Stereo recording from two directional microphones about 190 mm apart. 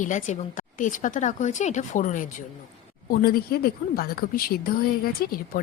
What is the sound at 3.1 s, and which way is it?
A woman's voice, 55° left (ahead or behind).